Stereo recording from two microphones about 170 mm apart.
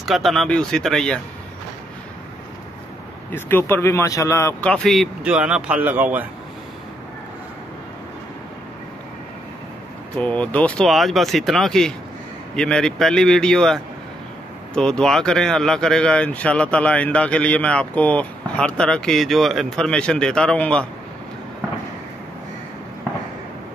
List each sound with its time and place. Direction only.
0.0 s speech: centre (ahead or behind)
3.3 s speech: 15° left (ahead or behind)
4.6 s speech: 5° left (ahead or behind)
10.1 s speech: 10° left (ahead or behind)